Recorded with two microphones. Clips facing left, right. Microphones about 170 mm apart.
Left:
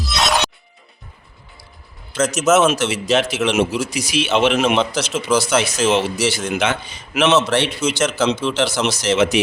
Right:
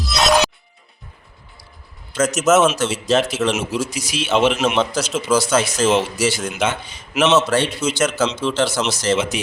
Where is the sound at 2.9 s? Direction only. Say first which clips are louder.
Even; 70° left (ahead or behind).